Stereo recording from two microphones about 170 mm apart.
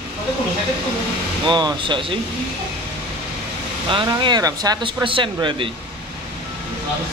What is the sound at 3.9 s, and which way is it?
Speech, 30° right (ahead or behind).